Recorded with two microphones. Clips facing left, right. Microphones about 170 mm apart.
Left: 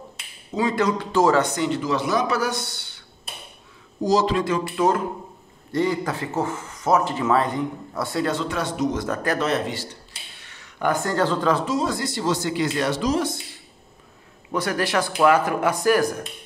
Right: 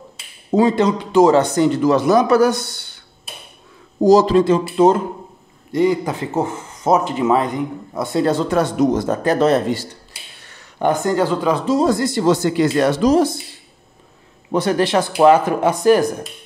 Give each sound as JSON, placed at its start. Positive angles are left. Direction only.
{"t": 0.6, "sound": "speech", "side_deg": -30}
{"t": 1.4, "sound": "speech", "side_deg": -40}
{"t": 4.0, "sound": "speech", "side_deg": -45}
{"t": 4.4, "sound": "speech", "side_deg": -30}
{"t": 8.2, "sound": "speech", "side_deg": -40}
{"t": 8.9, "sound": "speech", "side_deg": -30}
{"t": 10.8, "sound": "speech", "side_deg": -20}
{"t": 11.6, "sound": "speech", "side_deg": -35}
{"t": 14.5, "sound": "speech", "side_deg": -25}